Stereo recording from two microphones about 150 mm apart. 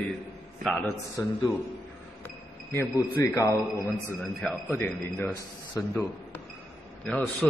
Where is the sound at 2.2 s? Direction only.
15° left (ahead or behind).